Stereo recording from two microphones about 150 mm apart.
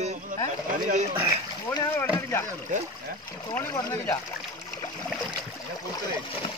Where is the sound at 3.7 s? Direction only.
25° left (ahead or behind).